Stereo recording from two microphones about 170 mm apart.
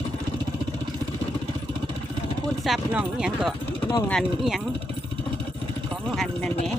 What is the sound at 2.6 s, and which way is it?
Speech, 5° right (ahead or behind).